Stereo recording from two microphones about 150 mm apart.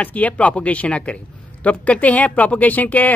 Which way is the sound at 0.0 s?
10° left (ahead or behind).